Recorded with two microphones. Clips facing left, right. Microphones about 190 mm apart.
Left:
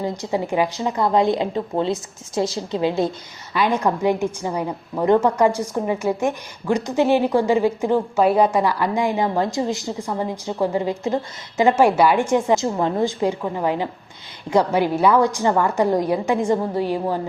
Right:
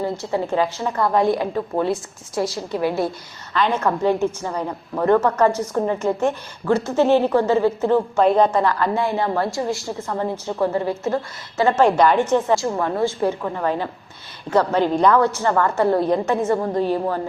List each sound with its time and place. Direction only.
0.0 s a woman's voice: 15° left (ahead or behind)
3.5 s a woman's voice: 10° left (ahead or behind)